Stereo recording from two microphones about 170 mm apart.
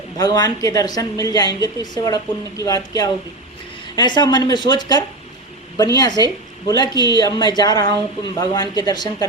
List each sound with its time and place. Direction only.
0.2 s a woman's voice: 25° left (ahead or behind)
6.8 s speech: 25° right (ahead or behind)
7.2 s a woman's voice: 25° left (ahead or behind)